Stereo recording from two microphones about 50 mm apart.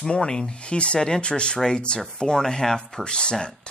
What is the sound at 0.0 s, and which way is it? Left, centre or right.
Speech, centre.